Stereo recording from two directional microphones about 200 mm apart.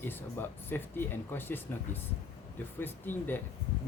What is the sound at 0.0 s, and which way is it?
Speech, 10° left (ahead or behind).